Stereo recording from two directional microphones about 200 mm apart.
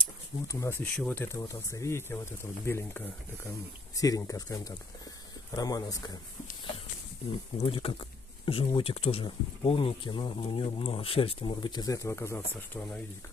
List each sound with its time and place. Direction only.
0.0 s speech: 15° left (ahead or behind)
7.5 s speech: 25° left (ahead or behind)